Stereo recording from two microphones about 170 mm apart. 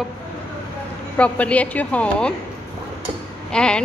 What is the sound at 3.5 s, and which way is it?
Speech, 5° left (ahead or behind).